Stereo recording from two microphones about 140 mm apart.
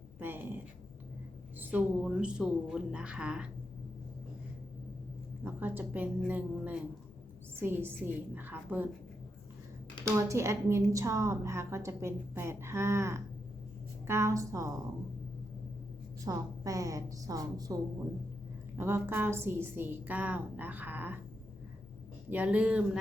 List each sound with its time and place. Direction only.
0.2 s a sound: 15° right (ahead or behind)
1.5 s a woman's voice: 10° right (ahead or behind)
5.4 s a woman's voice: 15° right (ahead or behind)
10.2 s a woman's voice: 20° right (ahead or behind)
16.2 s a woman's voice: 25° right (ahead or behind)
18.8 s a woman's voice: 15° right (ahead or behind)
22.3 s a woman's voice: 10° right (ahead or behind)